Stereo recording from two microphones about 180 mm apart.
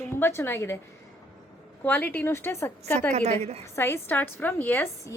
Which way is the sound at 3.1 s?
35° right (ahead or behind).